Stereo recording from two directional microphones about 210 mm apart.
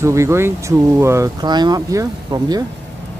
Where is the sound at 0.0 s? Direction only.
15° right (ahead or behind).